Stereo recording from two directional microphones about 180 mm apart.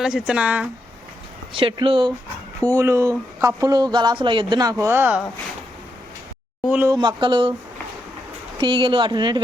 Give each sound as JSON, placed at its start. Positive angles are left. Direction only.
{"t": 0.0, "sound": "speech", "side_deg": -5}
{"t": 1.5, "sound": "speech", "side_deg": -30}
{"t": 2.7, "sound": "speech", "side_deg": -15}
{"t": 6.7, "sound": "speech", "side_deg": -10}
{"t": 6.9, "sound": "speech", "side_deg": -25}
{"t": 8.5, "sound": "speech", "side_deg": -25}